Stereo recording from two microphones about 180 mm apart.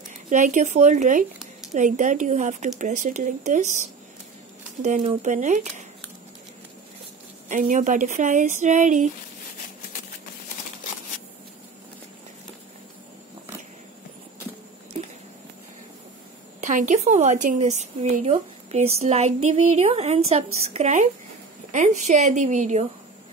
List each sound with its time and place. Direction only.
0.3 s speech: 45° right (ahead or behind)
4.8 s a woman's voice: 40° right (ahead or behind)
7.4 s speech: 45° right (ahead or behind)
16.6 s a woman's voice: 45° right (ahead or behind)